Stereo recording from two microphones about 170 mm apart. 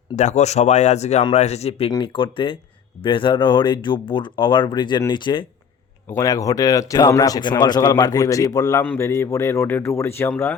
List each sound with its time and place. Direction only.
0.2 s speech: 45° left (ahead or behind); by 5.5 s 25° left (ahead or behind)
6.1 s speech: 15° left (ahead or behind)